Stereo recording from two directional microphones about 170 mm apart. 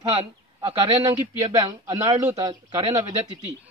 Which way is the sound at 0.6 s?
25° right (ahead or behind).